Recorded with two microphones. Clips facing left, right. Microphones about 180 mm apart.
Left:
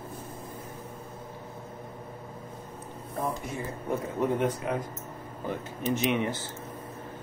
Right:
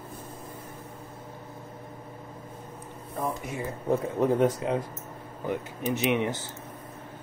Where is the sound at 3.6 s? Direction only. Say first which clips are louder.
Right 7 dB; 20° right (ahead or behind).